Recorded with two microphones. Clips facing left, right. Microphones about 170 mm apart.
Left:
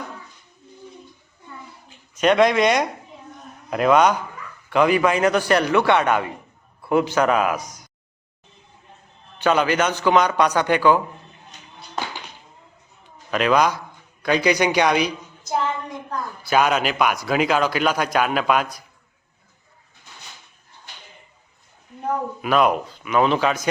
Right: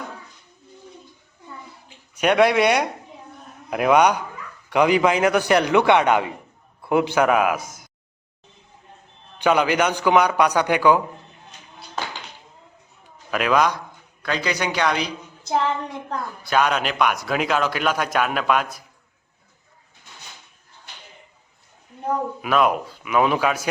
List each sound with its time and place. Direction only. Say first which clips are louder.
2.1 s a man's voice: left 1 dB; 10° right (ahead or behind)
9.4 s a man's voice: even; 15° right (ahead or behind)
13.3 s a man's voice: left 1 dB; 5° right (ahead or behind)
14.2 s a man's voice: left 6 dB; 15° left (ahead or behind)
16.5 s a man's voice: left 2 dB; 5° left (ahead or behind)
22.4 s a man's voice: left 2 dB; centre (ahead or behind)